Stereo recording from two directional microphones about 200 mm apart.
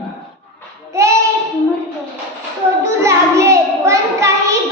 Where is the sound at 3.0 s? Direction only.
15° right (ahead or behind).